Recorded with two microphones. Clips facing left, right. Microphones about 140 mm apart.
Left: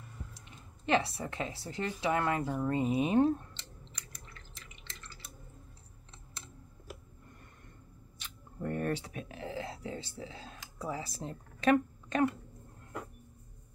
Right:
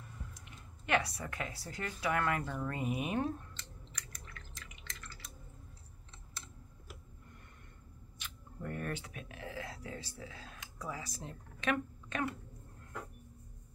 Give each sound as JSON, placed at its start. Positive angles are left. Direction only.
{"t": 0.3, "sound": "speech", "side_deg": 30}
{"t": 2.6, "sound": "drip", "side_deg": 25}
{"t": 8.2, "sound": "a sound", "side_deg": 35}